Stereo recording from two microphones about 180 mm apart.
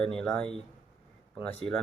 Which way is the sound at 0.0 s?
5° left (ahead or behind).